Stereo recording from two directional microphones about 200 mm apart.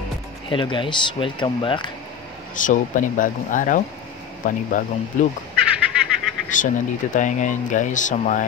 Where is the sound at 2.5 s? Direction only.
40° left (ahead or behind).